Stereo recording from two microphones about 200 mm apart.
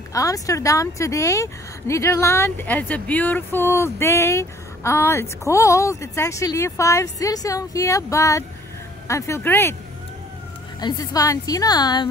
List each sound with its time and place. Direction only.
0.1 s speech: 15° left (ahead or behind)
10.8 s a woman's voice: 20° left (ahead or behind)